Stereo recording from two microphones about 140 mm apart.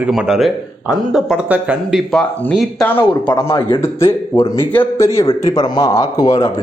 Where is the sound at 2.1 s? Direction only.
5° left (ahead or behind).